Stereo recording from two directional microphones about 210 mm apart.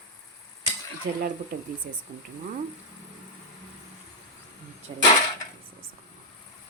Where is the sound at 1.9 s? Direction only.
40° right (ahead or behind).